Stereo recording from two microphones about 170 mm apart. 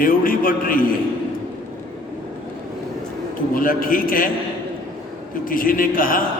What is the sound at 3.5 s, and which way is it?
Speech, 55° left (ahead or behind).